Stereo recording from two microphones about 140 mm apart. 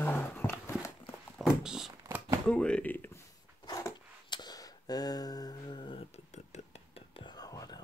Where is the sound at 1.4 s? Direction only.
5° right (ahead or behind).